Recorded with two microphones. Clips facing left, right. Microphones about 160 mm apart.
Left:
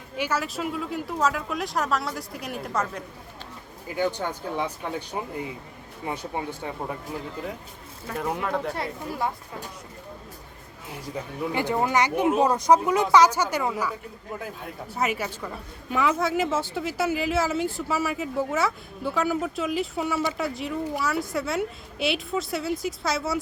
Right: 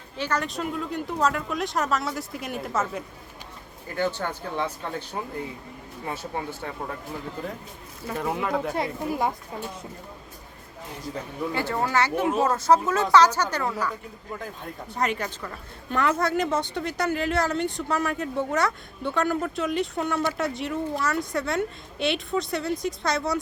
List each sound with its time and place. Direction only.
0.2 s a woman's voice: 5° left (ahead or behind)
3.8 s speech: 15° left (ahead or behind)
6.1 s speech: 15° left (ahead or behind)
8.0 s a woman's voice: centre (ahead or behind)
8.7 s speech: 15° right (ahead or behind)
11.1 s speech: 15° left (ahead or behind)
14.9 s a woman's voice: 5° left (ahead or behind)